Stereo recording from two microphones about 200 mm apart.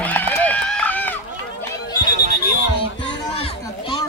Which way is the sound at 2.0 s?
40° right (ahead or behind).